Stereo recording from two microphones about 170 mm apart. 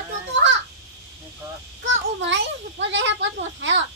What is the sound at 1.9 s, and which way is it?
A child's voice, 90° right.